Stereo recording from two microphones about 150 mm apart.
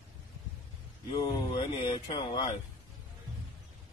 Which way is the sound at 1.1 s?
30° left (ahead or behind).